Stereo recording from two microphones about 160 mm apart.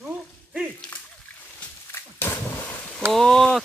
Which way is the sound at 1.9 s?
15° left (ahead or behind).